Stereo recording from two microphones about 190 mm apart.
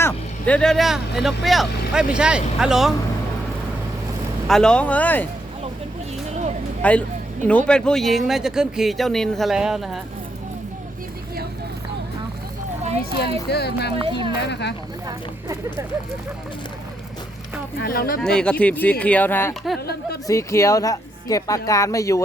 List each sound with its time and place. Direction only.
0.0 s speech: 5° left (ahead or behind)
4.4 s speech: 5° left (ahead or behind)
6.8 s speech: 5° left (ahead or behind)
13.0 s speech: 55° left (ahead or behind)
13.9 s speech: 25° right (ahead or behind)
14.4 s speech: 65° left (ahead or behind)
17.7 s speech: 50° left (ahead or behind)
18.2 s speech: 5° left (ahead or behind)